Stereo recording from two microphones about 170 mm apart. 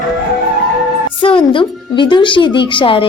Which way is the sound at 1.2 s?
30° left (ahead or behind).